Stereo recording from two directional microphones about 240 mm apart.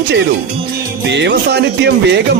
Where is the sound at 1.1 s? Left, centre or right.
Right.